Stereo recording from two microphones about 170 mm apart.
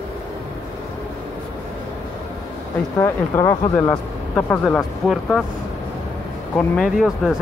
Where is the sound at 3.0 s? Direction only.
15° left (ahead or behind).